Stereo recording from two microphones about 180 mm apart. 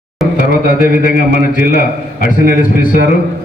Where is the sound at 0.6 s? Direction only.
50° left (ahead or behind).